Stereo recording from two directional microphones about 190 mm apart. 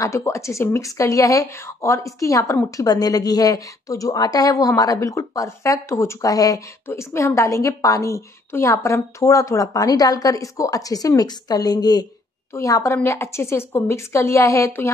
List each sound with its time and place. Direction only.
0.0 s speech: 15° left (ahead or behind)